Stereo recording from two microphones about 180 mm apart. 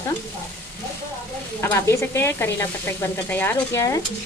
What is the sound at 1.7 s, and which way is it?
Speech, 15° left (ahead or behind).